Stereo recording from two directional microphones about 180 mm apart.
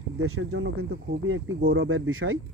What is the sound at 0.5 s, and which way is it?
Speech, 80° right.